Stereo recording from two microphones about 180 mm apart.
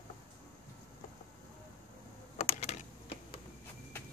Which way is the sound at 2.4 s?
35° left (ahead or behind).